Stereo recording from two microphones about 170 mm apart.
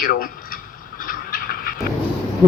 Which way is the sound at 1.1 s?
55° left (ahead or behind).